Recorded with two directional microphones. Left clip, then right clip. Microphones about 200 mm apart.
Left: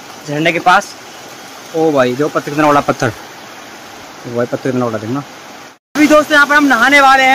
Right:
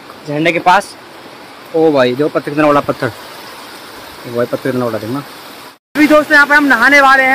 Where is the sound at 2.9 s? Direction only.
35° left (ahead or behind).